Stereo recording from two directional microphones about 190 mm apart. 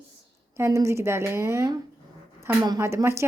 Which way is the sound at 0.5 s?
15° right (ahead or behind).